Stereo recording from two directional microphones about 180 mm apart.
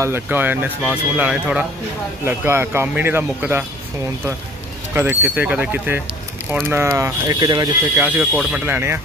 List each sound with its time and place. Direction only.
0.0 s speech: 10° right (ahead or behind)
4.9 s speech: 10° right (ahead or behind)
8.0 s speech: 5° right (ahead or behind)